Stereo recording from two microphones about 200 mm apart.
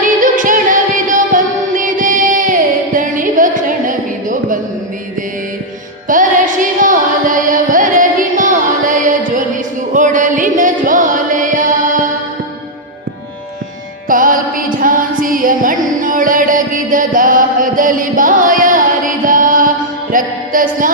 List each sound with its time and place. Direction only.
0.0 s music: 40° right (ahead or behind)
6.1 s music: 40° right (ahead or behind)
14.1 s music: 40° right (ahead or behind)